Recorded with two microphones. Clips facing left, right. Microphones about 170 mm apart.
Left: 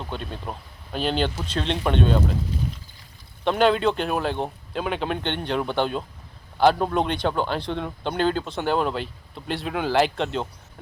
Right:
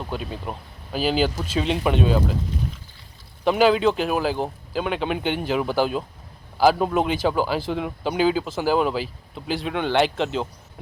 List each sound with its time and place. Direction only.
0.0 s speech: 5° right (ahead or behind)
3.4 s speech: 5° right (ahead or behind)